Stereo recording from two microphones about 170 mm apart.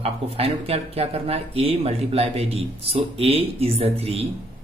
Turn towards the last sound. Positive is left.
turn(degrees=-35)  # may be behind; listen again after turning